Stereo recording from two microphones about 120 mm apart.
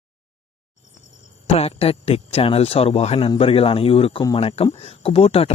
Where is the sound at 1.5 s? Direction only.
55° left (ahead or behind).